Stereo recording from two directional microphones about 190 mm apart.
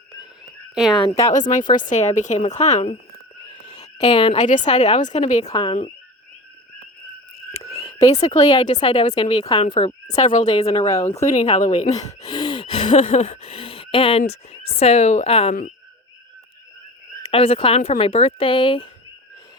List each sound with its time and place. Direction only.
0.9 s speech: 25° left (ahead or behind)
1.3 s a woman's voice: 40° left (ahead or behind)
3.7 s a woman's voice: 20° left (ahead or behind); by 5.5 s 35° left (ahead or behind)
5.5 s speech: 25° left (ahead or behind)
7.9 s a sound: 20° left (ahead or behind)
8.2 s a woman's voice: 30° left (ahead or behind)
10.2 s a woman's voice: 40° left (ahead or behind)
12.2 s speech: 25° left (ahead or behind)
17.2 s speech: 30° left (ahead or behind)